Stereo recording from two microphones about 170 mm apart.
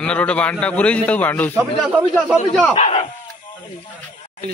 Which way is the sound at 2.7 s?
35° left (ahead or behind).